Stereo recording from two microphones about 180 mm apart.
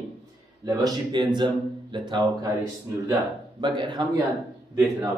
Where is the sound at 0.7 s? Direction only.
20° right (ahead or behind).